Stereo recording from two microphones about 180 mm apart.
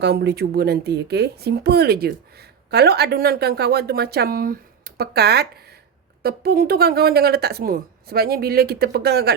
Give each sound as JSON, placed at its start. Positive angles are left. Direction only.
{"t": 0.0, "sound": "speech", "side_deg": -65}